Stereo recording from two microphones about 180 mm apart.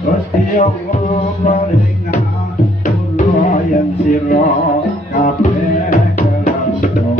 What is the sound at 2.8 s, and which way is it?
Music, 45° left (ahead or behind).